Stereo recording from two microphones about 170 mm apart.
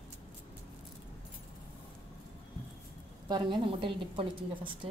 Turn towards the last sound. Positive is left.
turn(degrees=-30)  # may be behind; listen again after turning